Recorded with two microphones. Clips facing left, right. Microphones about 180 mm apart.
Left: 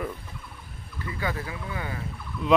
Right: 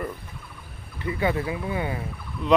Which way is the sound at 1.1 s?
25° right (ahead or behind).